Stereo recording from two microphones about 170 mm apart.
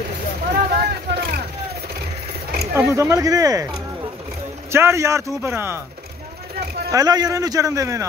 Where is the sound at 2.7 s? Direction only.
15° right (ahead or behind).